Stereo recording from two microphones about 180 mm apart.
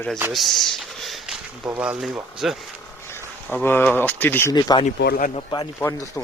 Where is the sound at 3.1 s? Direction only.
10° left (ahead or behind).